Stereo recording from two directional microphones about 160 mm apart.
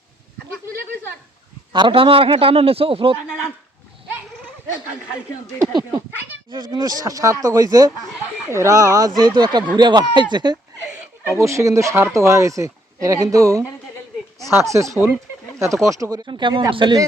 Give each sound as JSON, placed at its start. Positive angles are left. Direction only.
{"t": 1.7, "sound": "a man's voice", "side_deg": -30}
{"t": 5.5, "sound": "speech", "side_deg": -25}
{"t": 10.9, "sound": "speech", "side_deg": -15}